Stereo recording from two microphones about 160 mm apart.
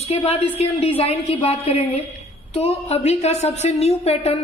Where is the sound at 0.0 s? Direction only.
40° left (ahead or behind).